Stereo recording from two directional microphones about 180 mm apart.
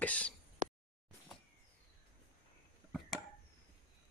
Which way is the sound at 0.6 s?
45° right (ahead or behind).